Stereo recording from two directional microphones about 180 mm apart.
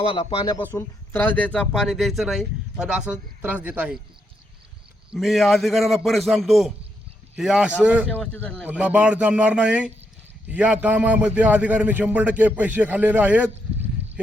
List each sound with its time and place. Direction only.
0.0 s speech: 30° left (ahead or behind)
0.5 s speech: 15° left (ahead or behind); by 3.9 s 10° right (ahead or behind)
5.1 s speech: centre (ahead or behind)
8.1 s speech: 10° left (ahead or behind)
8.6 s a man's voice: 5° right (ahead or behind)